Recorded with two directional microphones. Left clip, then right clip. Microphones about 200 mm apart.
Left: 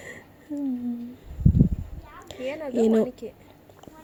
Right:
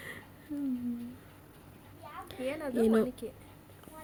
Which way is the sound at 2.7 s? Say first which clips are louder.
Left 6 dB; 20° left (ahead or behind).